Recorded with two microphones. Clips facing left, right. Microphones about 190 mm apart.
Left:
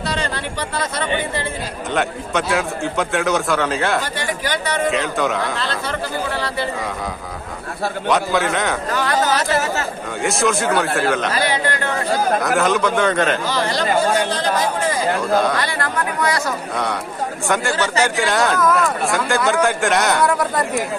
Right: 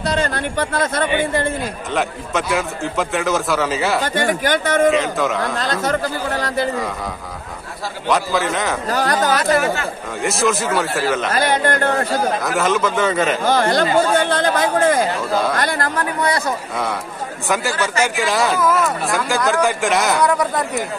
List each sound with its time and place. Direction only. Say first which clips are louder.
0.0 s speech: right 4 dB; 45° right (ahead or behind)
2.0 s speech: left 1 dB; centre (ahead or behind)
4.0 s speech: right 5 dB; 50° right (ahead or behind)
4.9 s speech: right 1 dB; centre (ahead or behind)
5.6 s speech: right 4 dB; 45° right (ahead or behind)
8.1 s speech: even; centre (ahead or behind)
8.9 s speech: right 2 dB; 40° right (ahead or behind)
10.2 s speech: even; centre (ahead or behind)
11.3 s speech: right 3 dB; 50° right (ahead or behind)
12.4 s speech: left 1 dB; centre (ahead or behind)
13.5 s speech: right 4 dB; 50° right (ahead or behind)
15.1 s speech: left 2 dB; centre (ahead or behind)
15.5 s speech: right 2 dB; 45° right (ahead or behind)
18.1 s speech: even; centre (ahead or behind)